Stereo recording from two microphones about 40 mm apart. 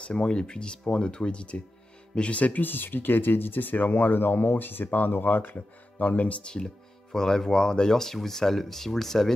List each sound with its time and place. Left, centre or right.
0.0 s speech: left
2.6 s speech: left
6.6 s speech: centre